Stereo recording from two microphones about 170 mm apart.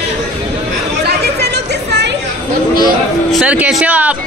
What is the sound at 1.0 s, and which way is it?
Chatter, 70° right (ahead or behind).